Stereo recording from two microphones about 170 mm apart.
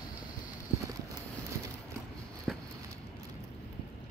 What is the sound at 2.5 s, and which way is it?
Walk, centre (ahead or behind).